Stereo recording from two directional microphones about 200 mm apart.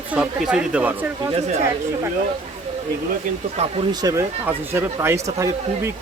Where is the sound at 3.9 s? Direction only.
20° right (ahead or behind).